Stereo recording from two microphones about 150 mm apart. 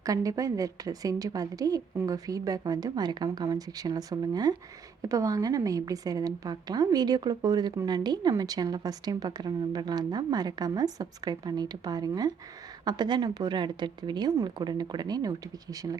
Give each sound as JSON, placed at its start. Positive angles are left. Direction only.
{"t": 0.0, "sound": "a woman's voice", "side_deg": -25}